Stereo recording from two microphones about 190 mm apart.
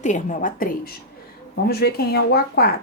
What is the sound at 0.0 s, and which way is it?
A woman's voice, 40° left (ahead or behind).